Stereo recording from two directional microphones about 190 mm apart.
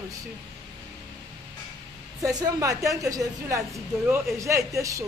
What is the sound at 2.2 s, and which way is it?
Speech, 20° right (ahead or behind).